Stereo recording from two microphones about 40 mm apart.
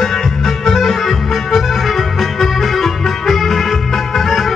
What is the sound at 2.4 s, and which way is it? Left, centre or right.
Music, centre.